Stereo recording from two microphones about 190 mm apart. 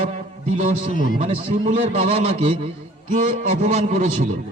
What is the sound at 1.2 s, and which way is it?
A man's voice, 35° right (ahead or behind).